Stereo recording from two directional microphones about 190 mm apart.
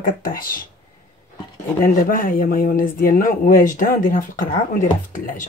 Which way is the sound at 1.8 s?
45° left (ahead or behind).